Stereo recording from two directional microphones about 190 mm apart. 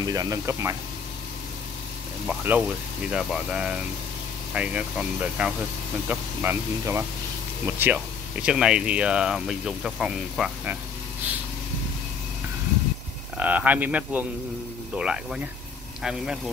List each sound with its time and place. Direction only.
0.0 s speech: 20° right (ahead or behind)
2.2 s speech: 5° right (ahead or behind)
13.4 s speech: 10° right (ahead or behind)